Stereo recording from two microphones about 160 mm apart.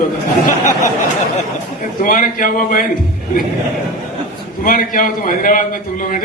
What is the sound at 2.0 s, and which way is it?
Speech, 55° left (ahead or behind).